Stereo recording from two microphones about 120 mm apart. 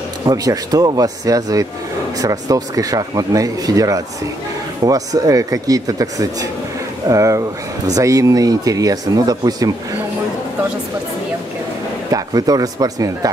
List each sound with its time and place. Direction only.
0.3 s speech: 30° right (ahead or behind)
12.1 s speech: 30° right (ahead or behind)